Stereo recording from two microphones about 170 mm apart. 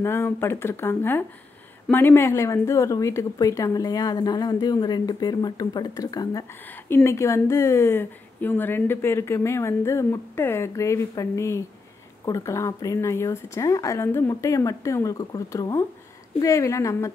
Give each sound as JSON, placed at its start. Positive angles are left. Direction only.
{"t": 0.0, "sound": "a woman's voice", "side_deg": 15}